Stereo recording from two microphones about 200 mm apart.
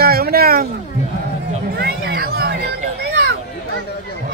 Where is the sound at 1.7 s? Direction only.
50° right (ahead or behind).